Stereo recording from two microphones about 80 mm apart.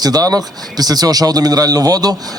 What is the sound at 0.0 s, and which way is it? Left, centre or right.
Speech, right.